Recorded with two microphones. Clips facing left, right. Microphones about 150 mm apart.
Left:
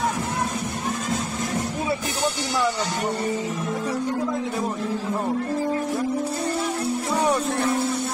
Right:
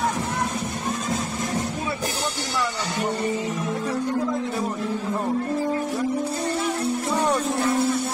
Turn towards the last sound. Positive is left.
turn(degrees=0)  # may be behind; listen again after turning